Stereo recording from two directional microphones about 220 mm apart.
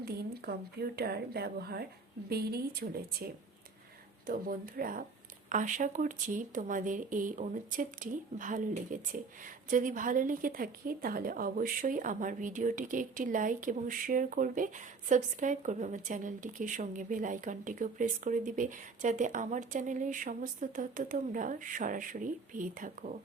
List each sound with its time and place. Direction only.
0.0 s speech: 45° right (ahead or behind)
4.3 s speech: 40° right (ahead or behind)